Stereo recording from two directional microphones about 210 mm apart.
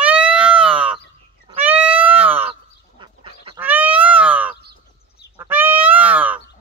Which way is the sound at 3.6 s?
10° right (ahead or behind).